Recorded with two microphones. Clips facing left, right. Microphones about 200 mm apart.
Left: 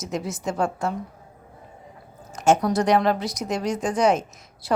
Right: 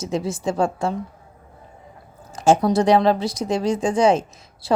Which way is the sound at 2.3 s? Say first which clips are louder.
Right 3 dB; 30° right (ahead or behind).